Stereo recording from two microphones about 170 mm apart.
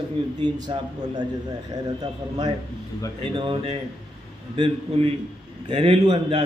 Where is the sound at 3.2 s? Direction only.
30° right (ahead or behind).